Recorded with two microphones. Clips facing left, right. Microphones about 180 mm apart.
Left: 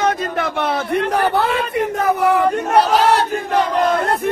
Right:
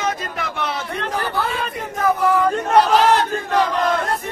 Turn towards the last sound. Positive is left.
turn(degrees=60)  # may be behind; listen again after turning